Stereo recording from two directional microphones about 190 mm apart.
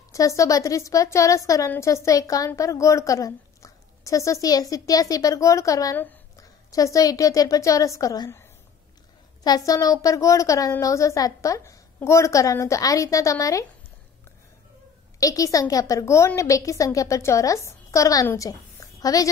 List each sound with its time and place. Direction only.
0.1 s a woman's voice: 15° left (ahead or behind)
15.1 s a woman's voice: 20° left (ahead or behind)